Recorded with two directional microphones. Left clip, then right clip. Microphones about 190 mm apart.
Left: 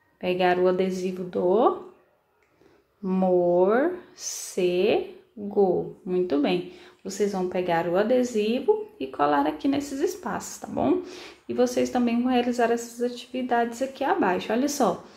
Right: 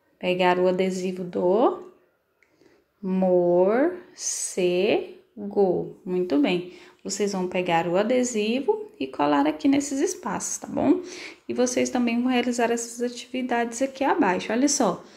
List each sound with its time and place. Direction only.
0.2 s speech: 15° right (ahead or behind)
3.1 s a woman's voice: 15° right (ahead or behind)